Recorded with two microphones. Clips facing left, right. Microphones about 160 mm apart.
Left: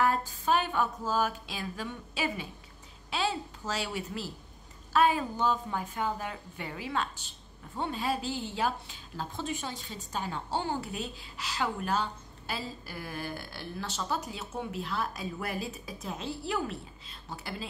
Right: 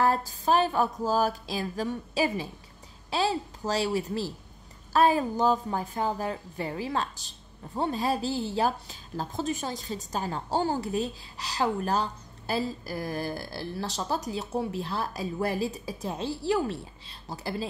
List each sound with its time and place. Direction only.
0.0 s a woman's voice: 35° right (ahead or behind)